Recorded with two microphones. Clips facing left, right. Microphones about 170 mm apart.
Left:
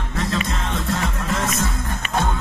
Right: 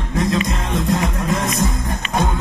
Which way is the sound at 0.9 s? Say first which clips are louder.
Right 5 dB; 15° right (ahead or behind).